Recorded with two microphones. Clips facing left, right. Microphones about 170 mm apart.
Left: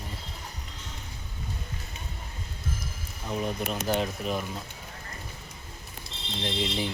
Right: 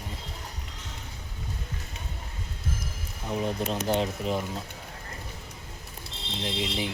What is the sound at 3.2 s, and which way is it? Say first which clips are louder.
Speech: right 2 dB; 20° right (ahead or behind).